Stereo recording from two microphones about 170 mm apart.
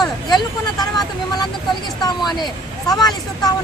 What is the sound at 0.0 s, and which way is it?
Speech, 20° left (ahead or behind).